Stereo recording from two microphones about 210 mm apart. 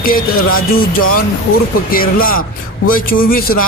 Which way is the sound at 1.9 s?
45° left (ahead or behind).